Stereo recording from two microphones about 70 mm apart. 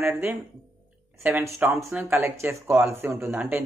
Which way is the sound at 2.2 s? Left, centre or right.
Right.